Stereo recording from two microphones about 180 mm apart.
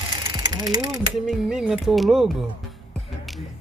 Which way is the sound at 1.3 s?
5° right (ahead or behind).